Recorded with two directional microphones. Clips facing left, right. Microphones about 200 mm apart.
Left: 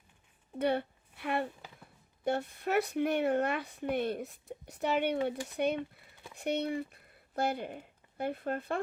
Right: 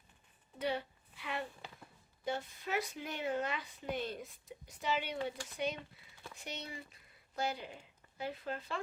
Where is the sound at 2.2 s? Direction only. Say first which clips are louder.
Left 7 dB; 60° left (ahead or behind).